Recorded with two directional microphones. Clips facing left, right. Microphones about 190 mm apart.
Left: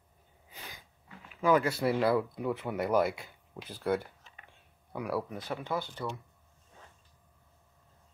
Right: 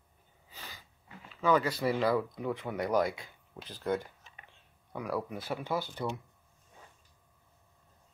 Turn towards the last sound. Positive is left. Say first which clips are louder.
# right 1 dB
turn(degrees=-15)  # may be behind; listen again after turning